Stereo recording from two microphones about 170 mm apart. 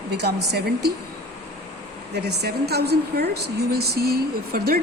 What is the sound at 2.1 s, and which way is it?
Speech, 75° right (ahead or behind).